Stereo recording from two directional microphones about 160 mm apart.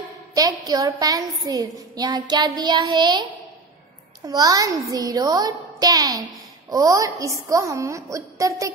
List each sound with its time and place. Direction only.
0.3 s a woman's voice: 25° right (ahead or behind)
4.3 s a woman's voice: 25° right (ahead or behind)